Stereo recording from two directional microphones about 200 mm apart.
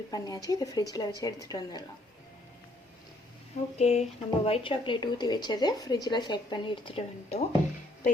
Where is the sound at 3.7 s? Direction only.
35° left (ahead or behind).